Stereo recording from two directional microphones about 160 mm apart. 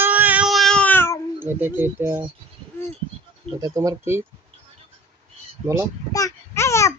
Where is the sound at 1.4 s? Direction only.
15° right (ahead or behind).